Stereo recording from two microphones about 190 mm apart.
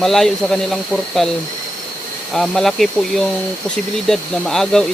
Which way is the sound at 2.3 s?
Centre (ahead or behind).